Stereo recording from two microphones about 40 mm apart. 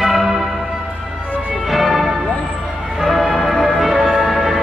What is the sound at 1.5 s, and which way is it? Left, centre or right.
Music, centre.